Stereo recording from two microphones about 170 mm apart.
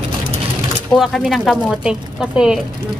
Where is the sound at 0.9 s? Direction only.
Centre (ahead or behind).